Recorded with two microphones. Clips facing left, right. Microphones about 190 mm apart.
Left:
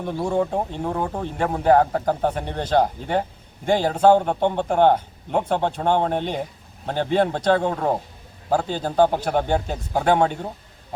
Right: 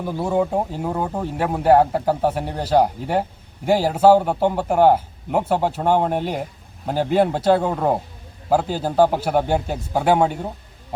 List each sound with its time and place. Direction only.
0.0 s speech: 5° right (ahead or behind)